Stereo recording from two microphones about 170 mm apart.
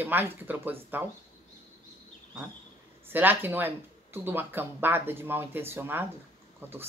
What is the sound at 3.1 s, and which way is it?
Speech, 10° right (ahead or behind).